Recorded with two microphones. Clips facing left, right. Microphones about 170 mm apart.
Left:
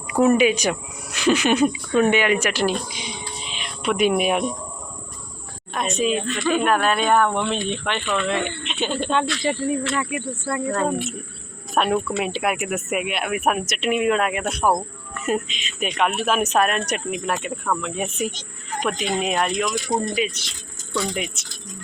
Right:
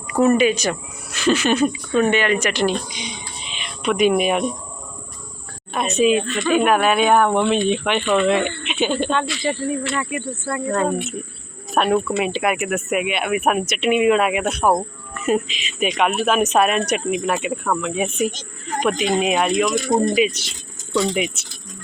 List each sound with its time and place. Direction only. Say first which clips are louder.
0.1 s speech: right 1 dB; 10° left (ahead or behind)
3.6 s music: right 3 dB; 5° left (ahead or behind)
4.2 s speech: right 2 dB; centre (ahead or behind)
5.7 s speech: right 5 dB; 5° right (ahead or behind)
10.0 s speech: right 1 dB; 10° left (ahead or behind)
18.3 s speech: right 4 dB; 45° right (ahead or behind)
18.9 s speech: right 5 dB; 5° right (ahead or behind)
19.7 s speech: right 5 dB; 50° right (ahead or behind)
20.2 s speech: right 6 dB; 15° right (ahead or behind)